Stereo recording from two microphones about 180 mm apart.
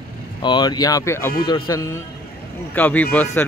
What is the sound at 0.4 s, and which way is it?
Speech, 25° left (ahead or behind).